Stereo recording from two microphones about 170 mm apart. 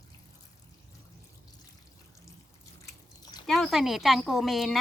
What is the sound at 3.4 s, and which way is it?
Speech, centre (ahead or behind).